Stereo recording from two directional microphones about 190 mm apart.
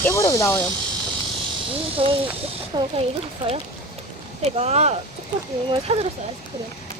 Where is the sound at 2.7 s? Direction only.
25° right (ahead or behind).